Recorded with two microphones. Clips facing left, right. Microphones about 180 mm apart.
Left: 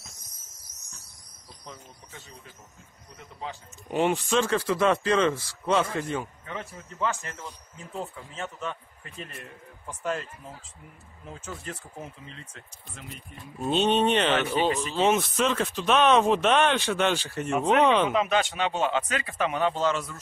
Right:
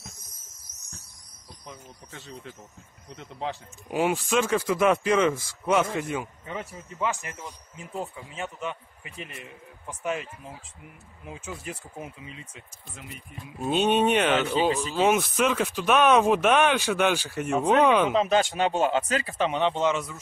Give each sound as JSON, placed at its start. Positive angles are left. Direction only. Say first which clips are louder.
{"t": 3.9, "sound": "speech", "louder": "even", "side_deg": -5}
{"t": 18.1, "sound": "speech", "louder": "right 2 dB", "side_deg": -35}